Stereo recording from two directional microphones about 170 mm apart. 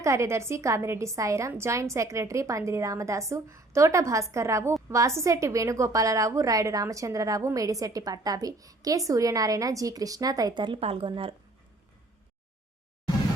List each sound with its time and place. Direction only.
0.0 s a woman's voice: 15° right (ahead or behind)